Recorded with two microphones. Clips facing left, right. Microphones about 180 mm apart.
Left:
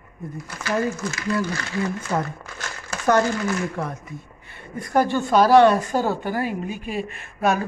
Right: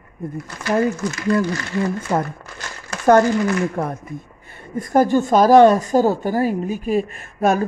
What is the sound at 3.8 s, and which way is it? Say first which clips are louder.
A woman's voice: right 5 dB; 50° right (ahead or behind).